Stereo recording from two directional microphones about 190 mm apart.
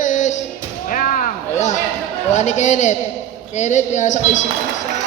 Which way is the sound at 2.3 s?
40° left (ahead or behind).